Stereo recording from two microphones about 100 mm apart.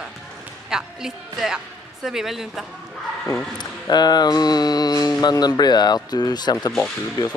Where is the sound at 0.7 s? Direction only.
5° right (ahead or behind).